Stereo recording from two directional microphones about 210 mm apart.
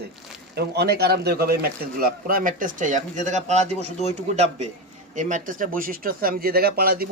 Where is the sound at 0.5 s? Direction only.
50° right (ahead or behind).